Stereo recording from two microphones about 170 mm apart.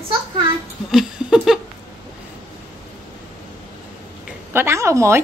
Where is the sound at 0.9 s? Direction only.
Centre (ahead or behind).